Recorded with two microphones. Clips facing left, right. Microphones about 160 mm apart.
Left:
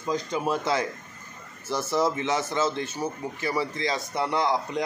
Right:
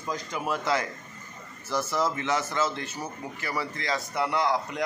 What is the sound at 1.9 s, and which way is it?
Speech, 15° left (ahead or behind).